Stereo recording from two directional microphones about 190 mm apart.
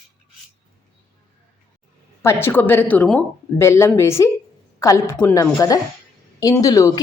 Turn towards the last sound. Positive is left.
turn(degrees=15)  # may be behind; listen again after turning